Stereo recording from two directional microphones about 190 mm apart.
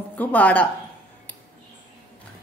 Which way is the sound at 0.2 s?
10° left (ahead or behind).